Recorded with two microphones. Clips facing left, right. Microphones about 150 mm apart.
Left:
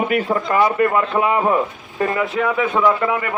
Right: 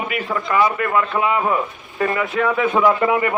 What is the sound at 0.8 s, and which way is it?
Speech, 25° left (ahead or behind).